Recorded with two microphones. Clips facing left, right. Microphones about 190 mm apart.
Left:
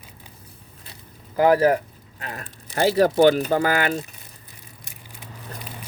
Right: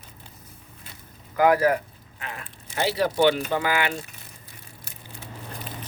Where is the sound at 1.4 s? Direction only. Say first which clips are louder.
Left 3 dB; 30° left (ahead or behind).